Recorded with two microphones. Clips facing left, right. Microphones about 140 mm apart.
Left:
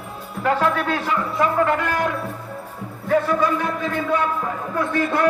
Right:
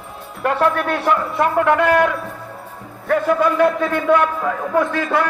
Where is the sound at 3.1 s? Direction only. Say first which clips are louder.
Right 2 dB; 65° right (ahead or behind).